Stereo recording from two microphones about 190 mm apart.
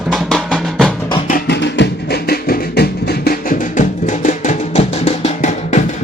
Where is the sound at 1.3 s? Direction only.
65° left (ahead or behind).